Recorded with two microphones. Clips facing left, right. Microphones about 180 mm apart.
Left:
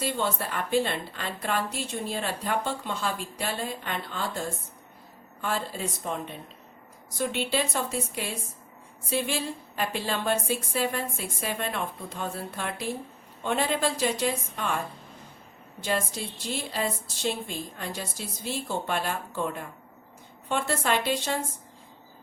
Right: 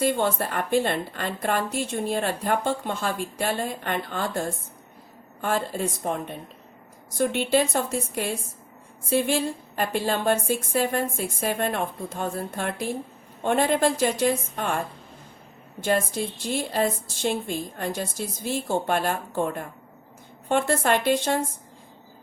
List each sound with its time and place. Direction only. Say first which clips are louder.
0.0 s a woman's voice: right 6 dB; 50° right (ahead or behind)
15.8 s a woman's voice: right 5 dB; 50° right (ahead or behind)